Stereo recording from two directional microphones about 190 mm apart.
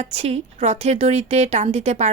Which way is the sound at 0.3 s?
35° right (ahead or behind).